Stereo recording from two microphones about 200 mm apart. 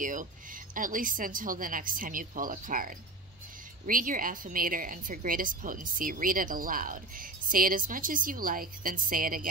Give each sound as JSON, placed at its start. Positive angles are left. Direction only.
{"t": 0.0, "sound": "a woman's voice", "side_deg": -40}